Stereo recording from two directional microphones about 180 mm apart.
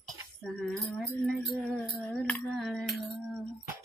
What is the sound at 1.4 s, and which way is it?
Female singing, centre (ahead or behind).